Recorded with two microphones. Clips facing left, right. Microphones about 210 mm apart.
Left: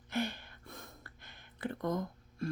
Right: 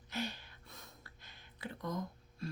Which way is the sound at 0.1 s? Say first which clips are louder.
Left 5 dB; 55° left (ahead or behind).